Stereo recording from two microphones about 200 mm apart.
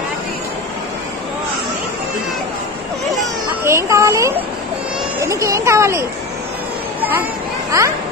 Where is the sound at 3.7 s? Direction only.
15° right (ahead or behind).